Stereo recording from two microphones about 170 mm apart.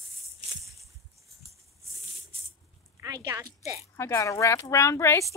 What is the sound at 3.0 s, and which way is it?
Speech, 20° right (ahead or behind).